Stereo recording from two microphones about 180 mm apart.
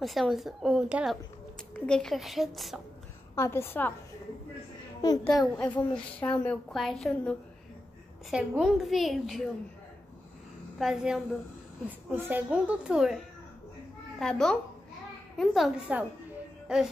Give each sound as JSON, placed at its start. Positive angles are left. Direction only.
{"t": 0.0, "sound": "a woman's voice", "side_deg": 0}
{"t": 3.3, "sound": "a woman's voice", "side_deg": 15}
{"t": 5.0, "sound": "a child's voice", "side_deg": 20}
{"t": 5.9, "sound": "a woman's voice", "side_deg": 5}
{"t": 10.8, "sound": "a woman's voice", "side_deg": -5}
{"t": 14.2, "sound": "a woman's voice", "side_deg": 5}
{"t": 16.6, "sound": "music", "side_deg": -5}